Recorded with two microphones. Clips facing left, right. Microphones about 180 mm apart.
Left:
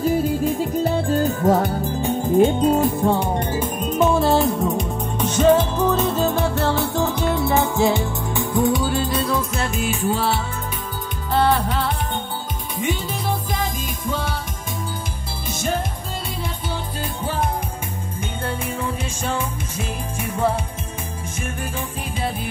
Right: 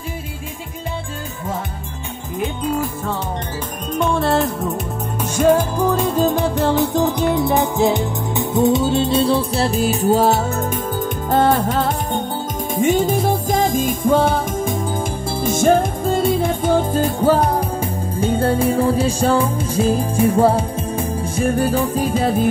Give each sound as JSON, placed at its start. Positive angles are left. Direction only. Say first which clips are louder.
{"t": 2.3, "sound": "music", "louder": "left 6 dB", "side_deg": 30}
{"t": 4.0, "sound": "music", "louder": "left 1 dB", "side_deg": 0}
{"t": 5.2, "sound": "music", "louder": "right 1 dB", "side_deg": -10}
{"t": 15.4, "sound": "music", "louder": "right 10 dB", "side_deg": -50}